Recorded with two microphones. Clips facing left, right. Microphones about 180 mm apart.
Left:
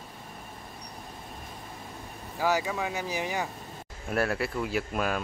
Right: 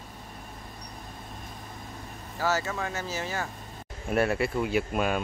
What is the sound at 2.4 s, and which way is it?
Speech, 15° left (ahead or behind).